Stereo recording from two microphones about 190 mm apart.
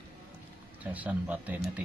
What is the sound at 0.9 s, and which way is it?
Speech, 10° right (ahead or behind).